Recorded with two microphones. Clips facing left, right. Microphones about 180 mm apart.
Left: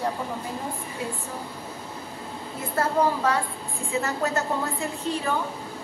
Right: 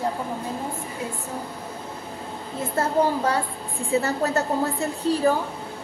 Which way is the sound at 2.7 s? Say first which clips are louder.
Right 1 dB; 25° right (ahead or behind).